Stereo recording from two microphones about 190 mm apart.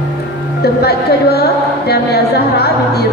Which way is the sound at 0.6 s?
55° left (ahead or behind).